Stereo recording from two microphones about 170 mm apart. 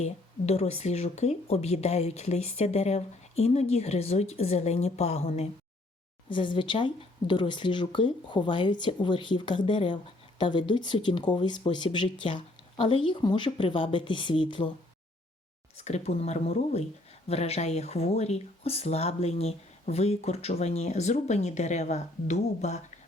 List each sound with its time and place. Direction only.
0.0 s speech: 40° left (ahead or behind)
6.2 s a woman's voice: 30° left (ahead or behind)
15.8 s speech: 40° left (ahead or behind)